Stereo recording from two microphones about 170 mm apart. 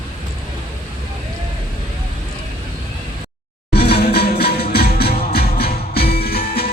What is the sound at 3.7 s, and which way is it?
Music, 70° left (ahead or behind).